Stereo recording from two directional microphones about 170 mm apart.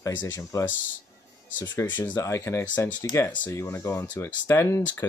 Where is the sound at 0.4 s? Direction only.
15° left (ahead or behind).